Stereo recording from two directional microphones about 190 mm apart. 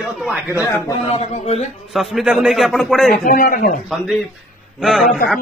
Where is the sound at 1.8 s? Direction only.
Centre (ahead or behind).